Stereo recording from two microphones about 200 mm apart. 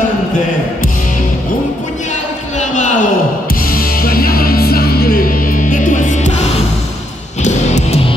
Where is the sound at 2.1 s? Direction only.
35° left (ahead or behind).